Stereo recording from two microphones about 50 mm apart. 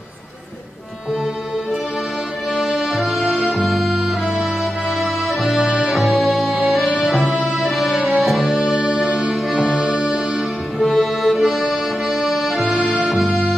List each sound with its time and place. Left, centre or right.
2.7 s music: centre
8.7 s music: right
10.8 s music: centre
11.2 s music: centre
12.5 s music: centre